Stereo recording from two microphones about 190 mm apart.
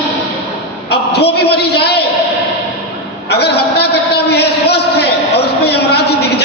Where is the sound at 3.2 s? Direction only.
60° left (ahead or behind).